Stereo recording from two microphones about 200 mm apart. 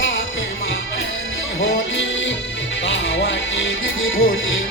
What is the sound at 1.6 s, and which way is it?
Music, 65° left (ahead or behind).